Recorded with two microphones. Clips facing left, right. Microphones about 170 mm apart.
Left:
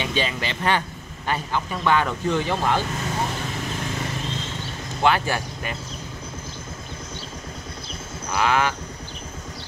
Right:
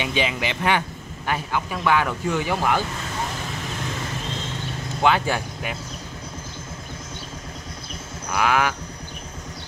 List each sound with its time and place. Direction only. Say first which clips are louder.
0.0 s speech: right 1 dB; 15° right (ahead or behind)
5.0 s speech: right 1 dB; 15° right (ahead or behind)
8.4 s speech: even; 10° right (ahead or behind)